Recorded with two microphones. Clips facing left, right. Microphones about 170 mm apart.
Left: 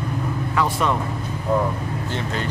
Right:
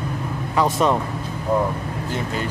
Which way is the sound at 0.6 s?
20° right (ahead or behind).